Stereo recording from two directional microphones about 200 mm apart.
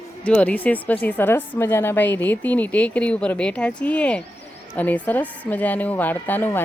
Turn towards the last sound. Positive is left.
turn(degrees=10)  # may be behind; listen again after turning